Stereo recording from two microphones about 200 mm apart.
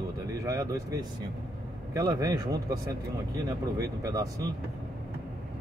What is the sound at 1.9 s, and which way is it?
Speech, 20° right (ahead or behind).